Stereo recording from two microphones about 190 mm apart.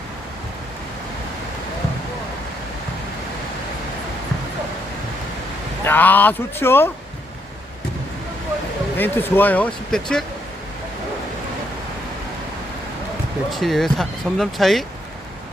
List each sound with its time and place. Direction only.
5.8 s speech: 10° left (ahead or behind)
9.0 s speech: 10° left (ahead or behind)
13.5 s speech: centre (ahead or behind)